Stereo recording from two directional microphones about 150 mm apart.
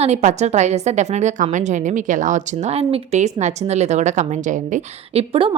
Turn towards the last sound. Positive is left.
turn(degrees=-55)  # may be behind; listen again after turning